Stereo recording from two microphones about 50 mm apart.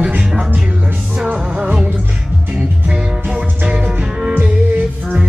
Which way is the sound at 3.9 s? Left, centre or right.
Centre.